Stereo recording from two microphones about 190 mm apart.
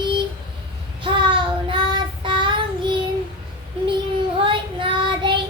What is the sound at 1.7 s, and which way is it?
Child singing, 25° right (ahead or behind).